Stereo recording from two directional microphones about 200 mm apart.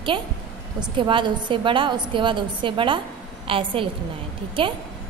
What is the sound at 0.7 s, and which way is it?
A woman's voice, 25° right (ahead or behind).